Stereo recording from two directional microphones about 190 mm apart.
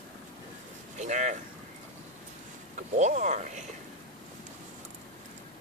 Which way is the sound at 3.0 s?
40° right (ahead or behind).